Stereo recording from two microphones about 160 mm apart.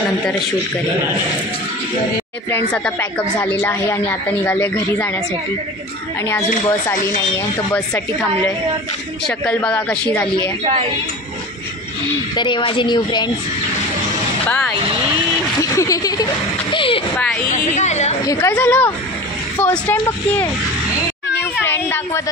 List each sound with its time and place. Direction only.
2.7 s speech: 5° left (ahead or behind)
7.2 s a woman's voice: 20° left (ahead or behind)
9.2 s speech: 5° left (ahead or behind)
10.6 s a woman's voice: 35° right (ahead or behind)
12.4 s a woman's voice: 30° left (ahead or behind)
14.5 s speech: 15° left (ahead or behind)
16.7 s speech: 35° left (ahead or behind)
17.5 s a woman's voice: 50° left (ahead or behind)
18.2 s a woman's voice: 20° left (ahead or behind)
18.5 s speech: 10° left (ahead or behind)
21.4 s a sound: 15° left (ahead or behind)